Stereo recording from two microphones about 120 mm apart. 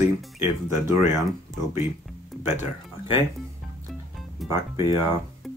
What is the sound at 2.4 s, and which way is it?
Speech, 20° right (ahead or behind).